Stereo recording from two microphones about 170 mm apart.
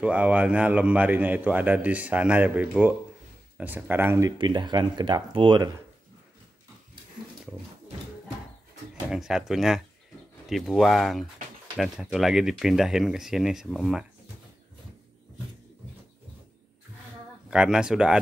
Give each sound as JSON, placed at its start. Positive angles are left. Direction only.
{"t": 0.0, "sound": "a man's voice", "side_deg": -10}
{"t": 4.4, "sound": "speech", "side_deg": -25}
{"t": 9.1, "sound": "speech", "side_deg": -5}
{"t": 17.5, "sound": "speech", "side_deg": -5}